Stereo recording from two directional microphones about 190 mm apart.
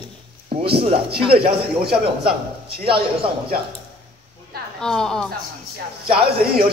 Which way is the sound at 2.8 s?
30° right (ahead or behind).